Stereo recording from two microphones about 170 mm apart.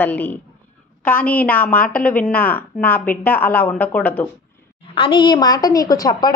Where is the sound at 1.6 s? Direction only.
55° left (ahead or behind).